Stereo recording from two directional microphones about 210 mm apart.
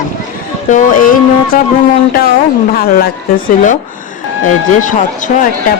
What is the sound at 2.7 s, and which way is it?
Speech, 45° left (ahead or behind).